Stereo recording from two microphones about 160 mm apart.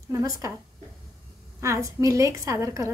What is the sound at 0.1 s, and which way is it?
Speech, 20° right (ahead or behind).